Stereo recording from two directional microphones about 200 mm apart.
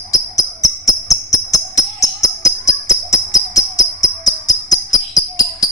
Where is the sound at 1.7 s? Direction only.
15° left (ahead or behind).